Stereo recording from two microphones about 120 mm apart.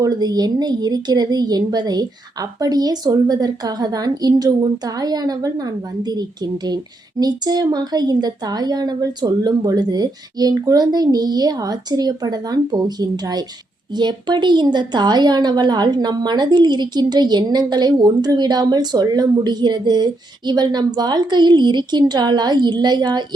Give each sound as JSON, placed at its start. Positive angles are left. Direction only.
{"t": 0.0, "sound": "a woman's voice", "side_deg": -35}